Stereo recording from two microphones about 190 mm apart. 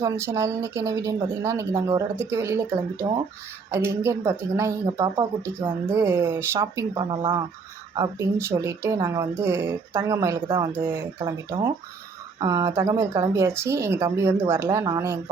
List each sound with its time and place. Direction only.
0.0 s speech: 15° right (ahead or behind)
3.7 s speech: 15° right (ahead or behind)